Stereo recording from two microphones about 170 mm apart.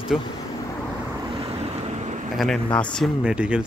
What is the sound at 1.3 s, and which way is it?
Boat, 40° right (ahead or behind).